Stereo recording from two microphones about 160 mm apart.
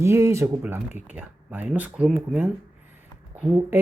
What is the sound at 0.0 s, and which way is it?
Speech, 15° right (ahead or behind).